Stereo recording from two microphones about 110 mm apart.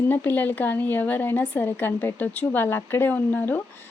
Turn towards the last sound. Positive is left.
turn(degrees=15)  # may be behind; listen again after turning